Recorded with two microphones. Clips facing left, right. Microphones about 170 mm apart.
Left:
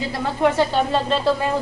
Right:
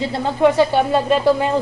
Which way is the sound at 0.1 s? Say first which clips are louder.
Right 4 dB; 15° right (ahead or behind).